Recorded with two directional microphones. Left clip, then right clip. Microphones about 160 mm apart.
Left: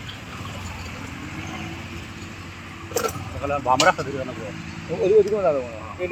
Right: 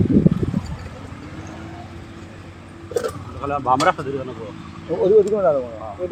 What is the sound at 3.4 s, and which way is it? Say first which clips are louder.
Speech: right 1 dB; 65° right (ahead or behind).